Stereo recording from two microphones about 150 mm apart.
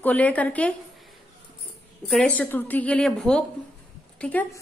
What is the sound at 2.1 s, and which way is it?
A woman's voice, 5° left (ahead or behind).